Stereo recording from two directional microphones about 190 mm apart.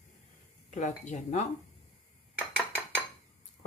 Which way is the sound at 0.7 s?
40° left (ahead or behind).